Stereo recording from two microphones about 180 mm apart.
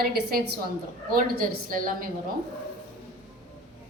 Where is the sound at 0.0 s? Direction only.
60° right (ahead or behind).